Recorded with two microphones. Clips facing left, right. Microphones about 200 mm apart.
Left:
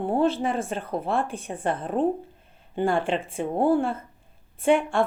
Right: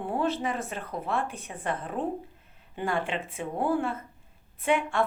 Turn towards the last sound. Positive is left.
turn(degrees=30)  # may be behind; listen again after turning